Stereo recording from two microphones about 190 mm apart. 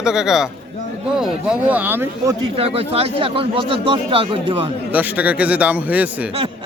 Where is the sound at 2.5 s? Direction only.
30° right (ahead or behind).